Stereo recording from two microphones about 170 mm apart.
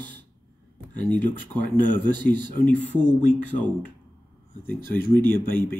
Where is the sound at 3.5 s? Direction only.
50° left (ahead or behind).